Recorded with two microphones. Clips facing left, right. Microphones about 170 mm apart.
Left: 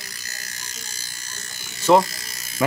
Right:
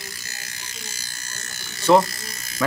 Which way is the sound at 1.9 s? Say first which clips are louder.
Even; centre (ahead or behind).